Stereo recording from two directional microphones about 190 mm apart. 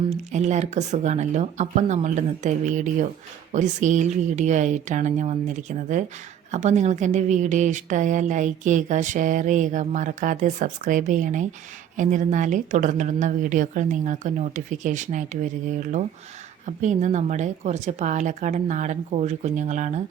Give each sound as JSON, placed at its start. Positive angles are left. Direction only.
{"t": 0.1, "sound": "a woman's voice", "side_deg": -40}
{"t": 16.6, "sound": "a woman's voice", "side_deg": -40}